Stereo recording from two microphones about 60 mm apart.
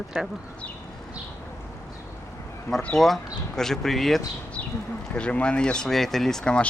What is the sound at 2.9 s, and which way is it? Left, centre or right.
Speech, centre.